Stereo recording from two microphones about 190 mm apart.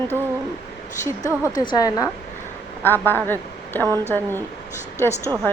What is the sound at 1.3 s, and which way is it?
A woman's voice, 15° left (ahead or behind).